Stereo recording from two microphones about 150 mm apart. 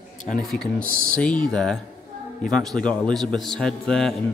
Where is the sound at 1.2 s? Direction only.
5° left (ahead or behind).